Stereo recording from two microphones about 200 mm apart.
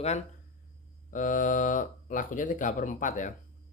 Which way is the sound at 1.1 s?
40° left (ahead or behind).